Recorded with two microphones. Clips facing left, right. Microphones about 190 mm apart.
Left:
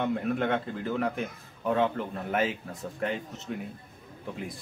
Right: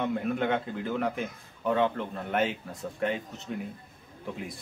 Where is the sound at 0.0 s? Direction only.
Centre (ahead or behind).